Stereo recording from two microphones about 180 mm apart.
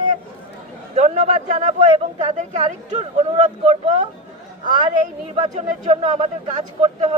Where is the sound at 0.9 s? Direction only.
40° right (ahead or behind).